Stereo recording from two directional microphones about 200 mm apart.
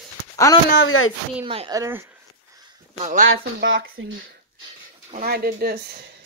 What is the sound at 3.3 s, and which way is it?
Speech, 60° right (ahead or behind).